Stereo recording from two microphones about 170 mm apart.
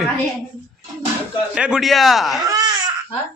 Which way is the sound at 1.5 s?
5° right (ahead or behind).